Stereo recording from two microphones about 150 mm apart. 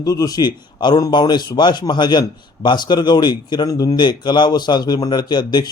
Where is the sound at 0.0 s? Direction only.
25° left (ahead or behind).